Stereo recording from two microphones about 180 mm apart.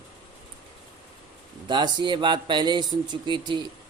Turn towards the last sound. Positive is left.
turn(degrees=-25)  # may be behind; listen again after turning